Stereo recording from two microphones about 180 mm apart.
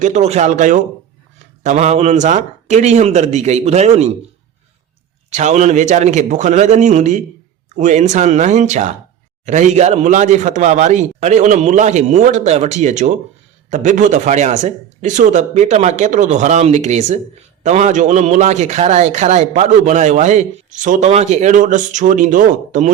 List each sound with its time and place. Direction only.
0.0 s a man's voice: 40° right (ahead or behind)
5.3 s a man's voice: 40° right (ahead or behind)